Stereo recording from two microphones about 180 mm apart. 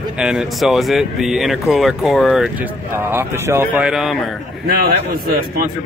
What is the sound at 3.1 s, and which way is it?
Speech, 15° right (ahead or behind).